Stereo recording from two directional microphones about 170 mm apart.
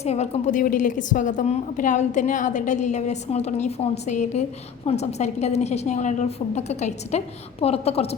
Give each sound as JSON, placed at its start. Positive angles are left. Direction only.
{"t": 0.0, "sound": "a woman's voice", "side_deg": 40}